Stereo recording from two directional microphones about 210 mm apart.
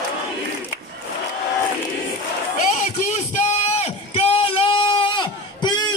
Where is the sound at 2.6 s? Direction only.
40° left (ahead or behind); by 5.9 s 20° left (ahead or behind).